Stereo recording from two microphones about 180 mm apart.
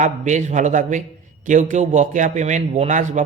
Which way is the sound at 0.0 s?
40° right (ahead or behind).